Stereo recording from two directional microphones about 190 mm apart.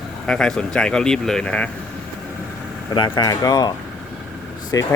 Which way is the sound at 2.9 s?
25° left (ahead or behind).